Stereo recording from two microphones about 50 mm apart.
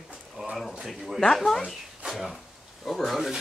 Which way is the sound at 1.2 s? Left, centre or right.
Centre.